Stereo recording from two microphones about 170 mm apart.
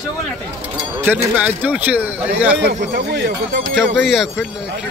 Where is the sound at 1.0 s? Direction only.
10° right (ahead or behind).